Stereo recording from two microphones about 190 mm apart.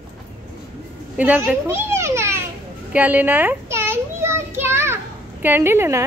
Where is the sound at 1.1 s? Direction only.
10° right (ahead or behind).